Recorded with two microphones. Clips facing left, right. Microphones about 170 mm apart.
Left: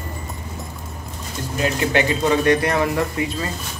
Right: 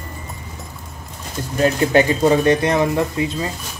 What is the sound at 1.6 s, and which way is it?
Speech, 40° right (ahead or behind).